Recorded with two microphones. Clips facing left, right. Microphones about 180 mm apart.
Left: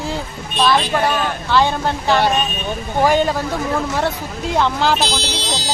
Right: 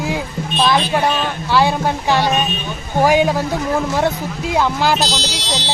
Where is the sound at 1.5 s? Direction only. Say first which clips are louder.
Right 1 dB; 10° right (ahead or behind).